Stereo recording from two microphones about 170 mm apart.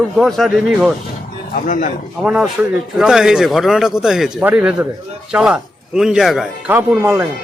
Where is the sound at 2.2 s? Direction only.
5° right (ahead or behind).